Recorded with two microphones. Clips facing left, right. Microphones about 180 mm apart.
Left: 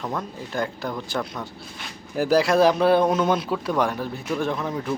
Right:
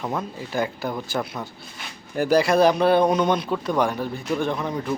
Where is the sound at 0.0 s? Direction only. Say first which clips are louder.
Right 2 dB; 5° right (ahead or behind).